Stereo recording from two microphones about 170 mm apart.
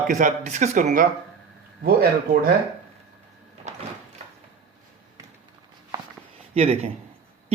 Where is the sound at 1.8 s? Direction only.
60° right (ahead or behind).